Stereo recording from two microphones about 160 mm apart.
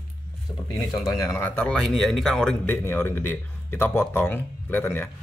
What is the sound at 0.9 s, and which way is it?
A man's voice, 20° left (ahead or behind).